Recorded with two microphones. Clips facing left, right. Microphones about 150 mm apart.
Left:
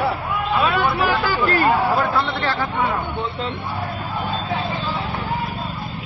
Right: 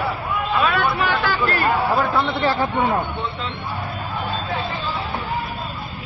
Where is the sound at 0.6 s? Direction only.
Centre (ahead or behind).